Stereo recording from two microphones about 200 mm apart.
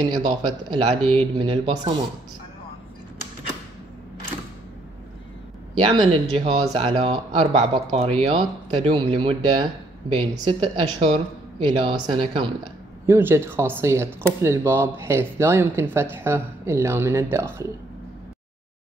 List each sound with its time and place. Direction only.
0.2 s speech: 25° right (ahead or behind)
5.9 s speech: 30° right (ahead or behind)
13.0 s speech: 10° right (ahead or behind)